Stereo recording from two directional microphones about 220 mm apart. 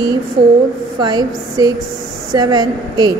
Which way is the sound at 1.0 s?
20° right (ahead or behind).